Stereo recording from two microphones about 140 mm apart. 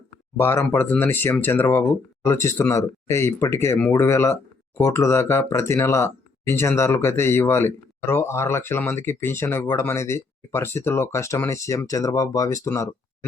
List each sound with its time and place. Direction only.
0.3 s speech: 15° left (ahead or behind)